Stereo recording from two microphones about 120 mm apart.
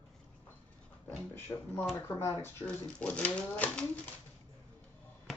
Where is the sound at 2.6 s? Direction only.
10° left (ahead or behind).